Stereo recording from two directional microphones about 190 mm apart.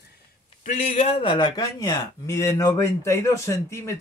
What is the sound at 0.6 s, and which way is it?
Speech, 35° left (ahead or behind).